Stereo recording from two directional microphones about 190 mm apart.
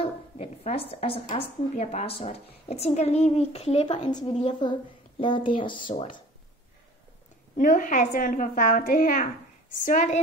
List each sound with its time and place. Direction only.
0.0 s a woman's voice: 30° left (ahead or behind)
7.5 s a woman's voice: 45° left (ahead or behind)